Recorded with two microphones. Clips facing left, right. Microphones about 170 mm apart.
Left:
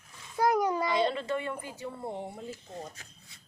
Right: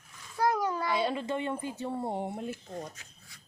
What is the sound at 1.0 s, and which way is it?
Speech, 10° right (ahead or behind).